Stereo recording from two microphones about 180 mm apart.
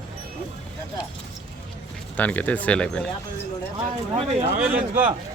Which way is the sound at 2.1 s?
10° left (ahead or behind).